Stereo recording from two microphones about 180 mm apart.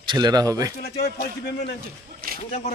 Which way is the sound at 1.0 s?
65° left (ahead or behind).